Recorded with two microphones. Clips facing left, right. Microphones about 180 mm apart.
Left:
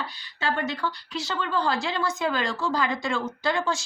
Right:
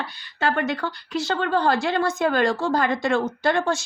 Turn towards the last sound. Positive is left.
turn(degrees=-50)  # may be behind; listen again after turning